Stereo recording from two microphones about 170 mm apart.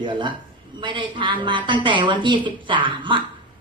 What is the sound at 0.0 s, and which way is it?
A woman's voice, 30° right (ahead or behind).